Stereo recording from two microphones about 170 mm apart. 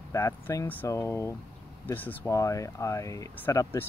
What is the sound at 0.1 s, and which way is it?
Speech, 15° left (ahead or behind).